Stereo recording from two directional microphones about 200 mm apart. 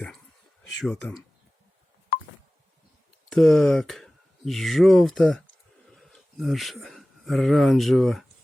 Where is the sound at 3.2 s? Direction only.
Centre (ahead or behind).